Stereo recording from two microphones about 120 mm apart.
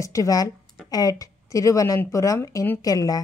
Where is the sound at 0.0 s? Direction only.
25° left (ahead or behind).